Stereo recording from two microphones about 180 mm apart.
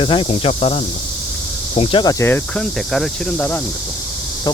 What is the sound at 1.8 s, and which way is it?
Speech, 30° left (ahead or behind).